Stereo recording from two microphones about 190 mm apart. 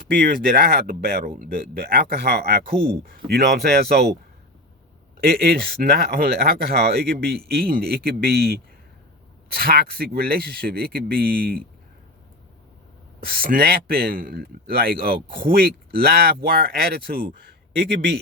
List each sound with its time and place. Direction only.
0.1 s speech: 45° right (ahead or behind)
5.2 s speech: 55° right (ahead or behind)
13.1 s speech: 50° right (ahead or behind)